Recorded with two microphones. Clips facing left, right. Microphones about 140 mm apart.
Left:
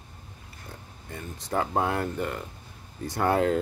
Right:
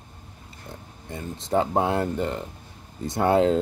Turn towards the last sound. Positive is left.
turn(degrees=-25)  # may be behind; listen again after turning